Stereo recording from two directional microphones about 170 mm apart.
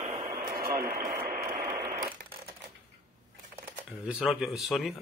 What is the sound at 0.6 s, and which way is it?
Radio, 55° right (ahead or behind).